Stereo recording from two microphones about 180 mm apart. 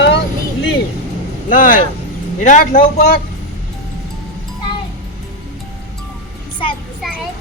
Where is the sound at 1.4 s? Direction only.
50° left (ahead or behind).